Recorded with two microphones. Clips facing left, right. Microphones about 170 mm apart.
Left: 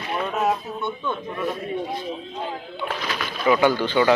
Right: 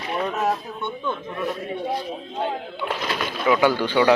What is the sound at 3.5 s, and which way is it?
Speech, 10° right (ahead or behind).